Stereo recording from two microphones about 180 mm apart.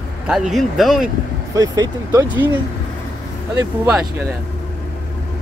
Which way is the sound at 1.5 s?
20° right (ahead or behind).